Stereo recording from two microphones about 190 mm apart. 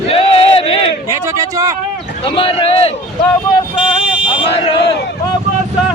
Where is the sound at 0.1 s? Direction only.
30° left (ahead or behind).